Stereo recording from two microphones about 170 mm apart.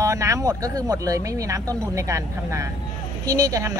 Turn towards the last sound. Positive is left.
turn(degrees=-20)  # may be behind; listen again after turning